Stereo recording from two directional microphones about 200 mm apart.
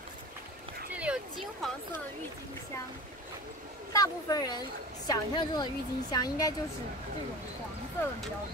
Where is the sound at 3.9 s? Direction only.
20° left (ahead or behind).